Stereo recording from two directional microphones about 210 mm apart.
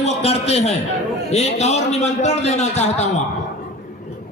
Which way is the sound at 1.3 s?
30° left (ahead or behind).